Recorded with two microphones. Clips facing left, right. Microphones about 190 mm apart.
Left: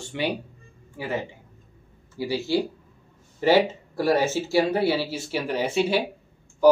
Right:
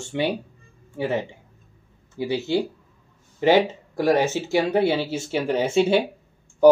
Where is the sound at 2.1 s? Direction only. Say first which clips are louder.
Right 2 dB; 20° right (ahead or behind).